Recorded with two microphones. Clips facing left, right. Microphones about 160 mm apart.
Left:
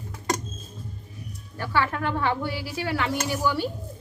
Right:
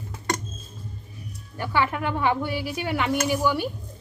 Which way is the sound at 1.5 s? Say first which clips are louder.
Right 1 dB; 15° right (ahead or behind).